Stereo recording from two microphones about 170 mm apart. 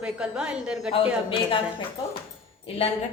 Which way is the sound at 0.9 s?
30° left (ahead or behind).